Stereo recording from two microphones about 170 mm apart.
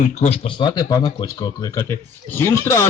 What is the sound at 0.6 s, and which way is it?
Speech, 25° left (ahead or behind).